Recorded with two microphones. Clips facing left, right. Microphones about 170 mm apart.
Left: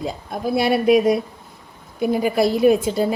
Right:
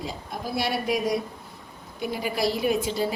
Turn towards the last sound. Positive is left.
turn(degrees=50)  # may be behind; listen again after turning